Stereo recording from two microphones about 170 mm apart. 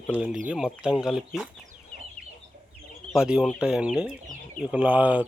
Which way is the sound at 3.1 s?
5° right (ahead or behind).